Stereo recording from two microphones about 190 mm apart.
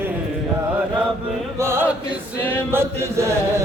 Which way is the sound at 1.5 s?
15° right (ahead or behind).